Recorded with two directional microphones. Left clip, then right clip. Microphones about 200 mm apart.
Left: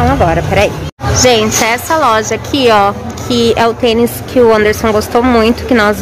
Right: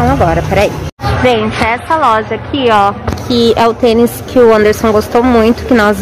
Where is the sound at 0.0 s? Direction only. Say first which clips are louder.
Even; 5° right (ahead or behind).